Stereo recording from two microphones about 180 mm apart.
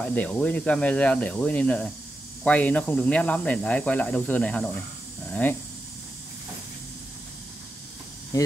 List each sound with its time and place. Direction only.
0.0 s speech: 10° left (ahead or behind)
8.3 s speech: 20° left (ahead or behind)